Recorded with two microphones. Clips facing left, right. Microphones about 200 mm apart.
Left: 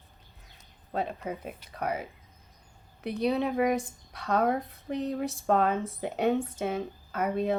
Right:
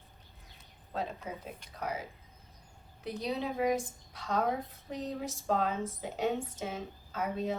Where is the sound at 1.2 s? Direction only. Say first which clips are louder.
Left 6 dB; 60° left (ahead or behind).